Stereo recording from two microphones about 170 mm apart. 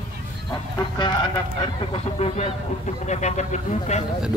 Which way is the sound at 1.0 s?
25° left (ahead or behind).